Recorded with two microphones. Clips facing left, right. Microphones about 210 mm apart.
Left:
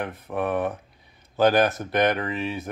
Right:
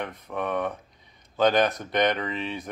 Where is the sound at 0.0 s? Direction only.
5° left (ahead or behind).